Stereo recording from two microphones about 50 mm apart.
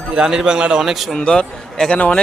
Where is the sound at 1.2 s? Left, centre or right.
Centre.